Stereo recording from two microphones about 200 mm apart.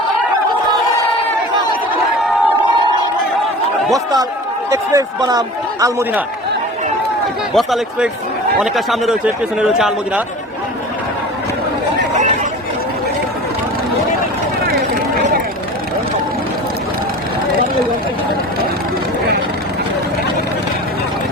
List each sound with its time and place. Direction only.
3.9 s a man's voice: 20° right (ahead or behind)
7.5 s a man's voice: centre (ahead or behind)